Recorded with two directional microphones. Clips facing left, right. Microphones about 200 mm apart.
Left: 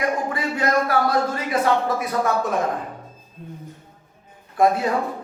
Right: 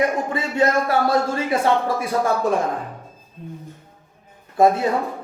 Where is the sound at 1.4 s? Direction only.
30° right (ahead or behind).